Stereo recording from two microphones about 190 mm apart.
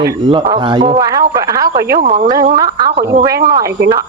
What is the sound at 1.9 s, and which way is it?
Speech, 50° right (ahead or behind).